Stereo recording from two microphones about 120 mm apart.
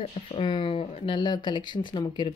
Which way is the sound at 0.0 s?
45° left (ahead or behind).